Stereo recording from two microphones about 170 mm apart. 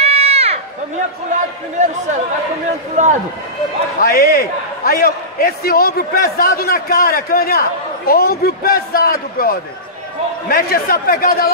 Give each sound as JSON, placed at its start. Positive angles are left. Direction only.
{"t": 0.0, "sound": "run", "side_deg": -40}
{"t": 1.8, "sound": "speech", "side_deg": -45}
{"t": 4.0, "sound": "a man's voice", "side_deg": 60}